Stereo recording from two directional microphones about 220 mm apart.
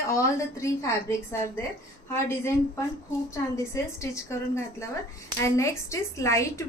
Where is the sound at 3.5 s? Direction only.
15° left (ahead or behind).